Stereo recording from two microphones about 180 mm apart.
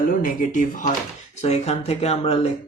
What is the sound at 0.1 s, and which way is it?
Speech, 50° left (ahead or behind).